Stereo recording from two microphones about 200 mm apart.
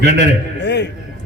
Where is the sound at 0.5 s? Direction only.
60° left (ahead or behind).